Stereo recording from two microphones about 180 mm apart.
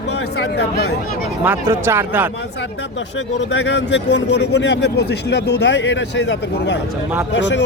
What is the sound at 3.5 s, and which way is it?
A man's voice, 80° left.